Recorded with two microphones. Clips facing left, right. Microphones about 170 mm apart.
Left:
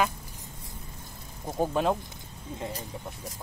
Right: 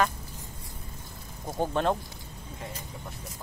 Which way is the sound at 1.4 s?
5° left (ahead or behind).